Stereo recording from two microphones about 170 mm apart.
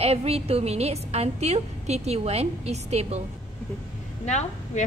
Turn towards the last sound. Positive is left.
turn(degrees=40)  # may be behind; listen again after turning